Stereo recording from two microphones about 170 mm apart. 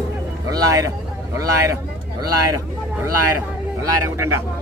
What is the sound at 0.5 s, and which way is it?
Speech, 20° right (ahead or behind).